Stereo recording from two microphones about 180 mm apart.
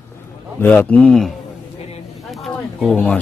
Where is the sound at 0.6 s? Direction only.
5° left (ahead or behind).